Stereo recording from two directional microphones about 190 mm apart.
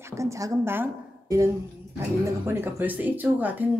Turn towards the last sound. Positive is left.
turn(degrees=-10)  # may be behind; listen again after turning